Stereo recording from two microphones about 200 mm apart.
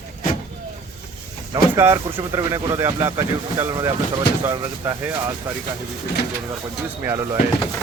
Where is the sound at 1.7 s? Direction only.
15° right (ahead or behind).